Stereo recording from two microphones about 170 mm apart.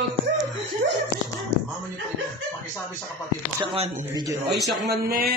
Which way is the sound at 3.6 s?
30° right (ahead or behind).